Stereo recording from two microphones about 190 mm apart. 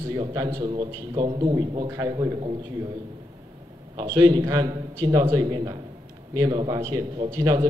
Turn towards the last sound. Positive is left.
turn(degrees=-15)  # may be behind; listen again after turning